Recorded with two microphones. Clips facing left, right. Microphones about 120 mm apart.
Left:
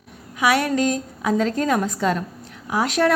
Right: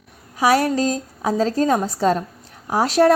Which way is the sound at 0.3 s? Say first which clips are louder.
Right 3 dB; 30° right (ahead or behind).